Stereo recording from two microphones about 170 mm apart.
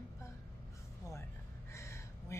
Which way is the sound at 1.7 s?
15° left (ahead or behind).